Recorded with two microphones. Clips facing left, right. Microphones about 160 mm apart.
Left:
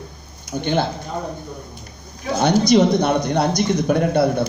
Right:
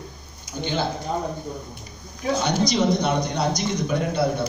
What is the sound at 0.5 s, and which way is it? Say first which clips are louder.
Speech: left 6 dB; 55° left (ahead or behind).